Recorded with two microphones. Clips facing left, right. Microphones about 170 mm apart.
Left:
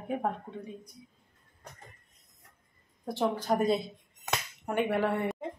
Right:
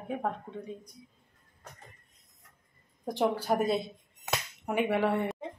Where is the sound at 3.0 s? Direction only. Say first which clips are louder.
Right 1 dB; 15° right (ahead or behind).